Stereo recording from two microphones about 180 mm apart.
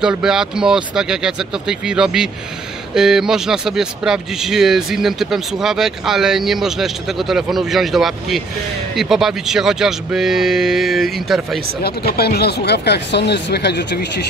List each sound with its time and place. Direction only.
0.0 s speech: 5° right (ahead or behind)
12.1 s speech: 60° left (ahead or behind)